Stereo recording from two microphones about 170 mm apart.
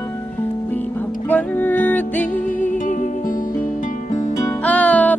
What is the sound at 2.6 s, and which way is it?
Music, 50° left (ahead or behind).